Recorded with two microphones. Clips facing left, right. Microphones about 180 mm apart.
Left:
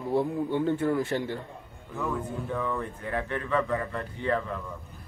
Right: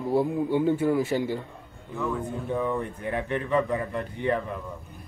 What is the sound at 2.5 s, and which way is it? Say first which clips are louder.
Speech: right 4 dB; 20° right (ahead or behind).